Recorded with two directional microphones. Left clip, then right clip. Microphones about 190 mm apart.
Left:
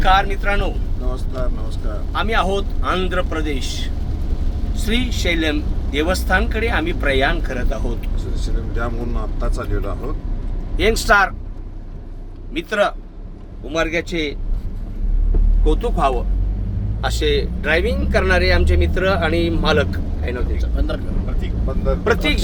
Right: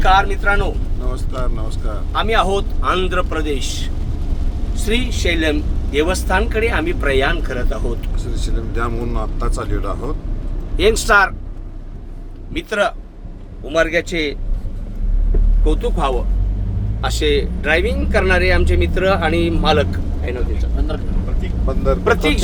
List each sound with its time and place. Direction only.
0.0 s a man's voice: 10° right (ahead or behind)
1.1 s speech: 40° right (ahead or behind)
2.1 s a man's voice: 10° right (ahead or behind)
8.4 s speech: 40° right (ahead or behind)
10.8 s a man's voice: 5° right (ahead or behind)
12.5 s a man's voice: 5° right (ahead or behind)
15.6 s speech: centre (ahead or behind)
22.0 s speech: centre (ahead or behind)